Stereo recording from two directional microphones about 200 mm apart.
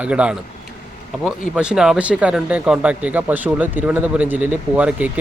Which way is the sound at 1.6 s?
5° right (ahead or behind).